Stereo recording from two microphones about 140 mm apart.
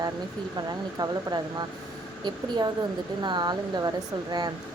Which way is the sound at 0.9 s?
30° right (ahead or behind).